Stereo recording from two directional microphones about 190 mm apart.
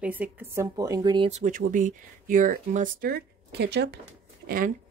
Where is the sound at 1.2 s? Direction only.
40° right (ahead or behind); by 3.9 s 60° right (ahead or behind).